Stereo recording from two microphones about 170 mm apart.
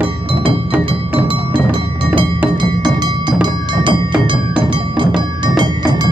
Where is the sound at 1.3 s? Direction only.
30° right (ahead or behind).